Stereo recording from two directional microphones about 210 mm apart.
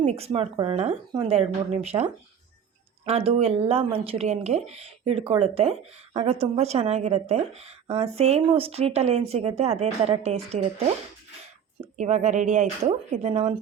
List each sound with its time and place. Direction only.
0.0 s speech: 30° right (ahead or behind)
3.1 s speech: 30° right (ahead or behind)
11.9 s speech: 35° right (ahead or behind)